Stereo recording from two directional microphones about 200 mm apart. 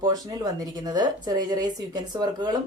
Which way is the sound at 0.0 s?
20° right (ahead or behind).